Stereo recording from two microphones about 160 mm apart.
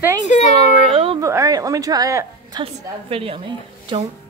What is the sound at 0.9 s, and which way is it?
Speech, 35° right (ahead or behind).